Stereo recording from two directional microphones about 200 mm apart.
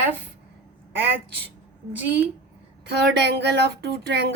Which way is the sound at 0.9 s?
55° right (ahead or behind).